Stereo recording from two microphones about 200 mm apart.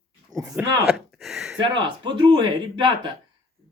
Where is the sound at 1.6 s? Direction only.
25° right (ahead or behind).